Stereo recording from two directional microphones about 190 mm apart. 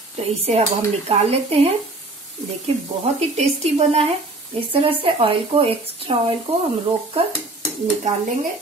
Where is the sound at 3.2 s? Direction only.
35° right (ahead or behind).